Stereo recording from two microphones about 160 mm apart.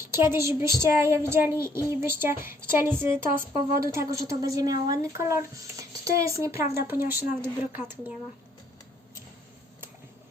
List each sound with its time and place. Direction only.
0.0 s speech: 15° right (ahead or behind)